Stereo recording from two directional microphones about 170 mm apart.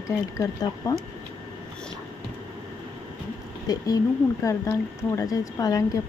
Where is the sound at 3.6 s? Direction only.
20° left (ahead or behind).